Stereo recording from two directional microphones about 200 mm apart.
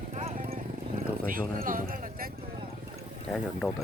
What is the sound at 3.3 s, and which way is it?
Speech, 5° left (ahead or behind).